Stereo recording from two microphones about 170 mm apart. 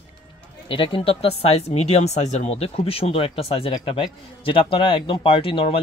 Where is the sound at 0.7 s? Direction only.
30° left (ahead or behind).